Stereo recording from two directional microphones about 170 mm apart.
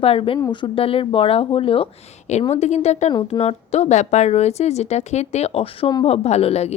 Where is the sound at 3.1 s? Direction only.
30° left (ahead or behind).